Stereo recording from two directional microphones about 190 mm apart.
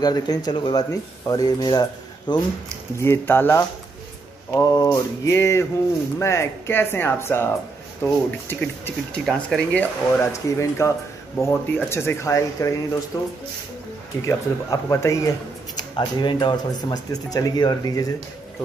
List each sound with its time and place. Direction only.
0.0 s speech: 20° left (ahead or behind)